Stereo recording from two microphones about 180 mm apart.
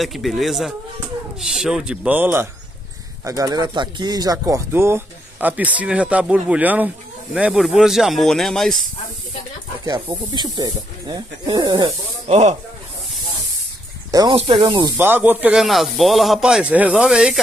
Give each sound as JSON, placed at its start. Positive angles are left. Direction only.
{"t": 0.0, "sound": "speech", "side_deg": 0}
{"t": 10.3, "sound": "speech", "side_deg": -20}
{"t": 14.1, "sound": "speech", "side_deg": -25}
{"t": 15.0, "sound": "speech", "side_deg": -10}